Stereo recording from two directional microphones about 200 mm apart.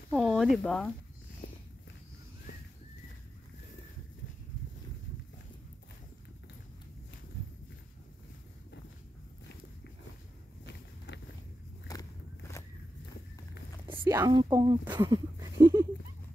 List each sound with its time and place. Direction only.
0.1 s a sound: centre (ahead or behind)
0.7 s speech: 5° left (ahead or behind)
11.1 s a sound: 60° left (ahead or behind)
11.9 s walk: 20° left (ahead or behind)
13.8 s whispering: 25° right (ahead or behind)
14.1 s speech: 20° right (ahead or behind)